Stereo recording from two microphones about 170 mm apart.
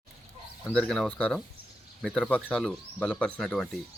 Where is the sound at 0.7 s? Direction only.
5° left (ahead or behind).